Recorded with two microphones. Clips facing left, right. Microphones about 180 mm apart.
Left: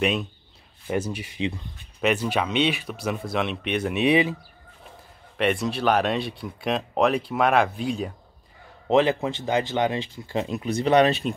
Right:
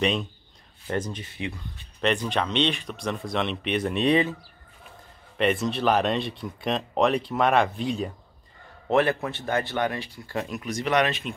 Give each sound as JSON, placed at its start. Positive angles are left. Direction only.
{"t": 0.0, "sound": "speech", "side_deg": 5}
{"t": 5.4, "sound": "speech", "side_deg": 0}
{"t": 8.8, "sound": "speech", "side_deg": 15}